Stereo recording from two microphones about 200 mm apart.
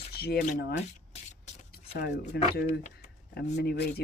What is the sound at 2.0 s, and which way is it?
Speech, 50° left (ahead or behind).